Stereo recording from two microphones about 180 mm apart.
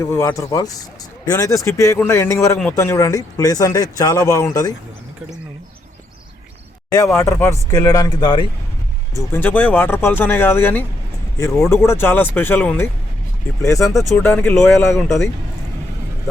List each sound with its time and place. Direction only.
0.0 s speech: 15° left (ahead or behind)
6.9 s speech: 15° left (ahead or behind)
9.3 s speech: 10° left (ahead or behind)